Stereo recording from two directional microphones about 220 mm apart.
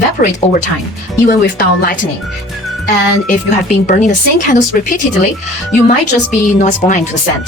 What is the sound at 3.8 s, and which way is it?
Speech, 35° left (ahead or behind).